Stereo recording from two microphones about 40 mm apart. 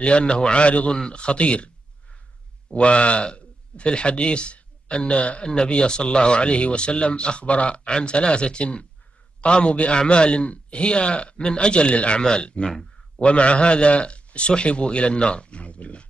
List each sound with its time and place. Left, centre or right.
0.0 s speech: left
2.7 s speech: left